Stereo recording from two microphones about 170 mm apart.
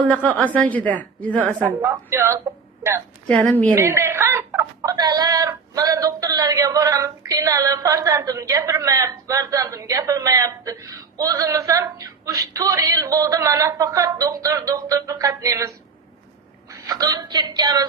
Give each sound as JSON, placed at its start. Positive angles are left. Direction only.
{"t": 0.1, "sound": "a woman's voice", "side_deg": 10}
{"t": 1.4, "sound": "a woman's voice", "side_deg": -10}
{"t": 3.2, "sound": "a woman's voice", "side_deg": 10}
{"t": 3.8, "sound": "speech", "side_deg": -15}
{"t": 16.8, "sound": "speech", "side_deg": -20}